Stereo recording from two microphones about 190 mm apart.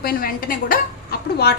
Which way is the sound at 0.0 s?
50° left (ahead or behind).